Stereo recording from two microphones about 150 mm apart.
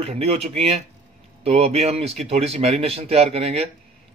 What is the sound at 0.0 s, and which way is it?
A man's voice, 45° right (ahead or behind).